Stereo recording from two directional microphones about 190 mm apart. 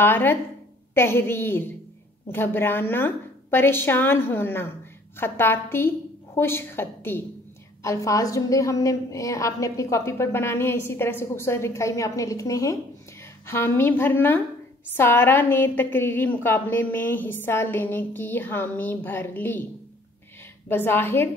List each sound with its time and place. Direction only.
0.0 s a woman's voice: 10° left (ahead or behind)
20.6 s a woman's voice: 10° left (ahead or behind)